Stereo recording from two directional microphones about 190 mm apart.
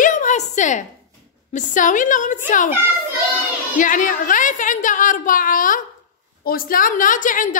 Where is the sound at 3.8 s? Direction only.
45° left (ahead or behind).